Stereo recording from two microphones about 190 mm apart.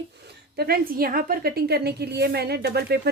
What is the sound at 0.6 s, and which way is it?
A woman's voice, 50° right (ahead or behind).